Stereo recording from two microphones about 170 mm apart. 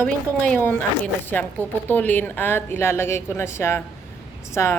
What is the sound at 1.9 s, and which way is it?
Speech, 10° left (ahead or behind).